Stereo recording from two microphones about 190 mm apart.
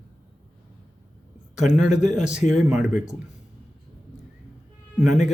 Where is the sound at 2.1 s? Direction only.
5° right (ahead or behind).